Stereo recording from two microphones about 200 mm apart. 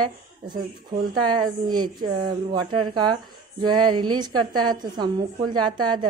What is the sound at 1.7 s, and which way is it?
A woman's voice, 20° right (ahead or behind).